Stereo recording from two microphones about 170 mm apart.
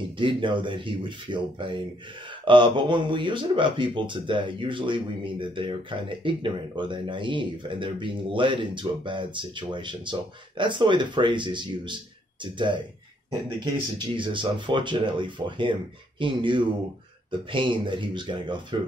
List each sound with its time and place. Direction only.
0.2 s speech: 30° right (ahead or behind)
13.9 s speech: 30° right (ahead or behind)